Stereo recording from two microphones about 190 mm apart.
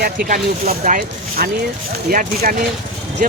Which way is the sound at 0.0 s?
50° right (ahead or behind).